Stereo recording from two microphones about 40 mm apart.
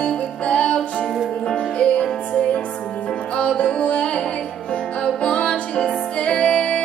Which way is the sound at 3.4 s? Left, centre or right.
Left.